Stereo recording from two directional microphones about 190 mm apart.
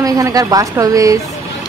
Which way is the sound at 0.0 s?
20° right (ahead or behind).